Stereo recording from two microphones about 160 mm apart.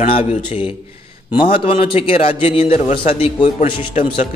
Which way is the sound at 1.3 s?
35° left (ahead or behind).